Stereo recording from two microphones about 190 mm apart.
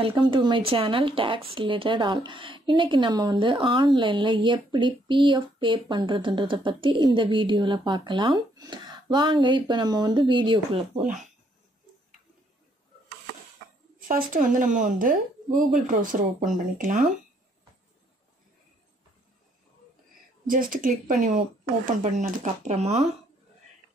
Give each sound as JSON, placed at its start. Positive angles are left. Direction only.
{"t": 0.3, "sound": "speech", "side_deg": -25}
{"t": 13.9, "sound": "a woman's voice", "side_deg": -45}
{"t": 15.5, "sound": "speech", "side_deg": 0}
{"t": 15.9, "sound": "a woman's voice", "side_deg": -45}
{"t": 20.4, "sound": "a woman's voice", "side_deg": -45}